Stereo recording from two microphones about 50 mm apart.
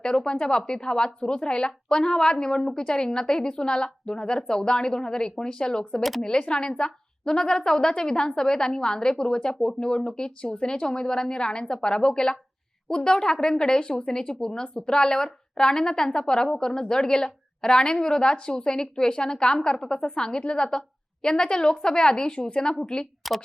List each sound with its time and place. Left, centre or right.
0.0 s speech: centre
6.0 s speech: centre
6.2 s speech: centre
23.2 s speech: centre